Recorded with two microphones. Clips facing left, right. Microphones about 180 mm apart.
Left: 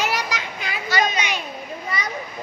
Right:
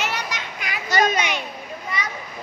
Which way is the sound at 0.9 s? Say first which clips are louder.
Right 3 dB; 50° right (ahead or behind).